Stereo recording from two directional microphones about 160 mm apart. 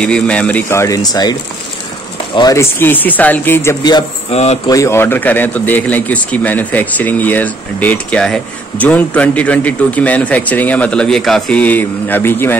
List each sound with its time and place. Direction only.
0.0 s speech: 5° left (ahead or behind); by 1.3 s 25° left (ahead or behind)
2.3 s speech: 20° left (ahead or behind)
4.3 s speech: 40° left (ahead or behind)
4.6 s speech: 20° left (ahead or behind)